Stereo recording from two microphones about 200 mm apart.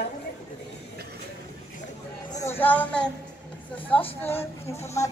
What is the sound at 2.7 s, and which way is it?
A woman's voice, 5° left (ahead or behind).